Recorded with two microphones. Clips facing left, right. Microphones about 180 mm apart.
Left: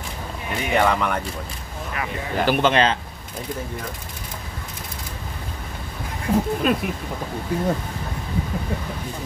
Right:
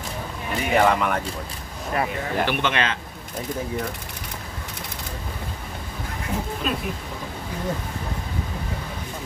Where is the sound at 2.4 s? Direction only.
35° left (ahead or behind).